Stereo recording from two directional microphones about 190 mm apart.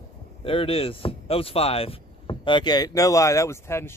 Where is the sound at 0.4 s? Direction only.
30° left (ahead or behind).